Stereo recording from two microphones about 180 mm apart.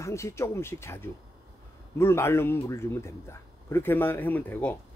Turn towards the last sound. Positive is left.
turn(degrees=10)  # may be behind; listen again after turning